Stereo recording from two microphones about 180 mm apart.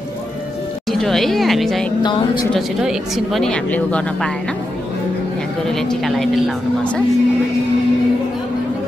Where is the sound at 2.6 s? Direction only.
Centre (ahead or behind).